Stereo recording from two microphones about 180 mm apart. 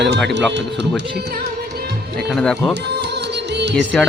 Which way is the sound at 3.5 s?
75° right (ahead or behind).